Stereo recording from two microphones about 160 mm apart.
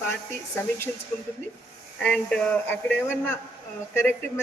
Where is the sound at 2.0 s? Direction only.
5° left (ahead or behind).